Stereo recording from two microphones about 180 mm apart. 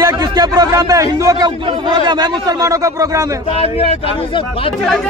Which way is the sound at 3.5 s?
30° left (ahead or behind).